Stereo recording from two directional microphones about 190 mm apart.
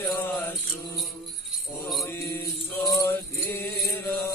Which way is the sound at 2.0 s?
15° left (ahead or behind).